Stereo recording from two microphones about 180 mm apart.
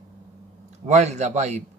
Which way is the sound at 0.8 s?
40° right (ahead or behind).